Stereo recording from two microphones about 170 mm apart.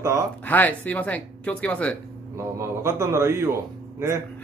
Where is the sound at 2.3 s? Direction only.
15° right (ahead or behind).